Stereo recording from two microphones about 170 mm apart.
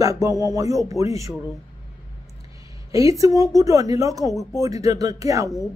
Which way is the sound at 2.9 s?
20° right (ahead or behind).